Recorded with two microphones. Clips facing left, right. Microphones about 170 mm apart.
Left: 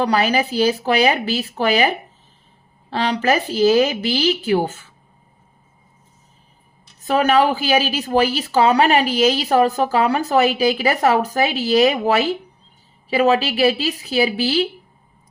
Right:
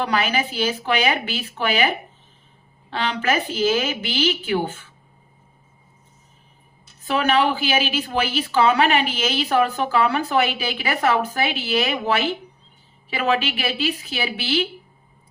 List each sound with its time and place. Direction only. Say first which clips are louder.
0.0 s a woman's voice: left 4 dB; 35° left (ahead or behind)
2.9 s a woman's voice: left 4 dB; 35° left (ahead or behind)
7.0 s a woman's voice: left 4 dB; 40° left (ahead or behind)